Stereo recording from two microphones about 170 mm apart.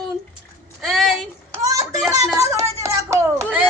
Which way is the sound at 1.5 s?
20° right (ahead or behind).